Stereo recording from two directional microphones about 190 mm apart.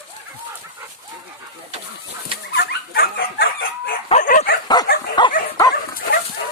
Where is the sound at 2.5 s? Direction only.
60° left (ahead or behind).